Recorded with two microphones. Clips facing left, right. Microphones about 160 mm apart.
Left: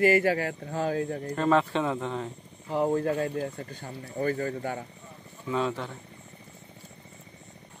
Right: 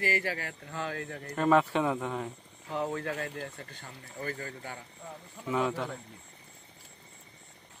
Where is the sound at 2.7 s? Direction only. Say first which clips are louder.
Left 7 dB; 35° left (ahead or behind).